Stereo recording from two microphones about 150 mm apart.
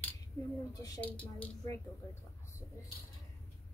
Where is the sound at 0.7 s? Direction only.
25° left (ahead or behind).